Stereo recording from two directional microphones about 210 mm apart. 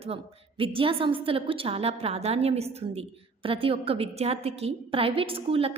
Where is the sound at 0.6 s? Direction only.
25° right (ahead or behind).